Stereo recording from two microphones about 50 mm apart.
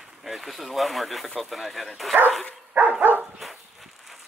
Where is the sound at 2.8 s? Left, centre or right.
Right.